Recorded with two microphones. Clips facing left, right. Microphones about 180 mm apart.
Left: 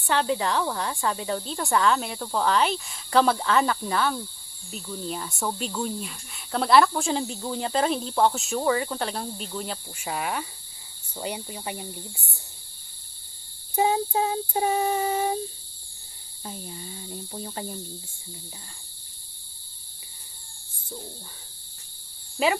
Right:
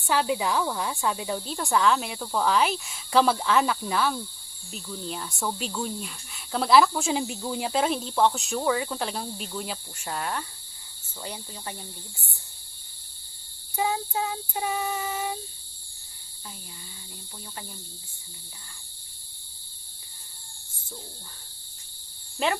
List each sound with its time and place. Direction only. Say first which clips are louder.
0.0 s speech: left 1 dB; 5° right (ahead or behind); by 12.3 s 20° left (ahead or behind)
13.7 s child singing: left 4 dB; 30° left (ahead or behind)
14.6 s speech: left 5 dB; 35° left (ahead or behind)
16.4 s speech: left 8 dB; 35° left (ahead or behind)
22.4 s speech: left 3 dB; 5° left (ahead or behind)